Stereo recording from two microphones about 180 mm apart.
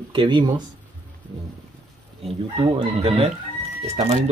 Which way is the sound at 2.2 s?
30° right (ahead or behind).